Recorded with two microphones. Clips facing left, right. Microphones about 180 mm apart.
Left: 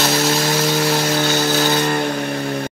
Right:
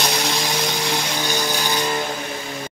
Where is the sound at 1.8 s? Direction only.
55° left (ahead or behind).